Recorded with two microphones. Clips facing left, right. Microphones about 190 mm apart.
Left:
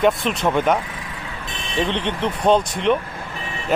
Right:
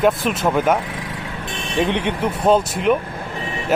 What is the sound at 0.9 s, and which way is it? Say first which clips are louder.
Vehicle: right 4 dB; 75° right (ahead or behind).